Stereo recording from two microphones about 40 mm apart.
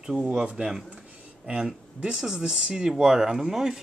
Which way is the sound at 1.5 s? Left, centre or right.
Right.